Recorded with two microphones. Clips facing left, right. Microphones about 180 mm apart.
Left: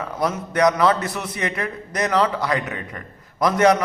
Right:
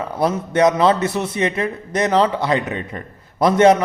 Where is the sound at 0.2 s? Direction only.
30° right (ahead or behind).